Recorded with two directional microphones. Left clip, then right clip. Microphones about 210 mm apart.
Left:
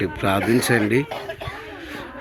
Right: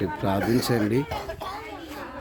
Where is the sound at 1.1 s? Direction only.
65° right (ahead or behind).